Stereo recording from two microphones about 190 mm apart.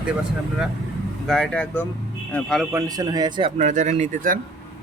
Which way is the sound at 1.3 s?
5° left (ahead or behind).